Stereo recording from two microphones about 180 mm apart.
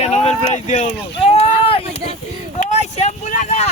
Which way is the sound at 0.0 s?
35° left (ahead or behind).